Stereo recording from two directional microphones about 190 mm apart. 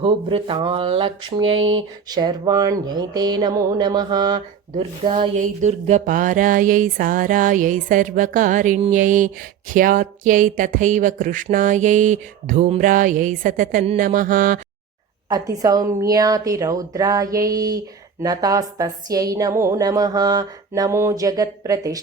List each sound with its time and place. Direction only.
0.0 s a woman's voice: 25° right (ahead or behind)
5.4 s a sound: 40° right (ahead or behind)
15.3 s a woman's voice: 20° right (ahead or behind)